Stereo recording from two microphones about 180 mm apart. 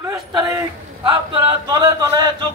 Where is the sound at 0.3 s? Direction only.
20° right (ahead or behind).